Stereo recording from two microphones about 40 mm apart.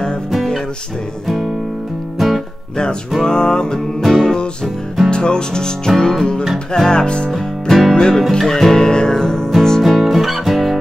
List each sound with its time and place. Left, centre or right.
1.2 s music: centre
3.3 s music: centre
4.0 s music: centre
5.1 s music: left
5.9 s music: centre
6.9 s music: left
7.3 s music: centre
7.9 s speech: centre
8.3 s music: centre
9.8 s music: centre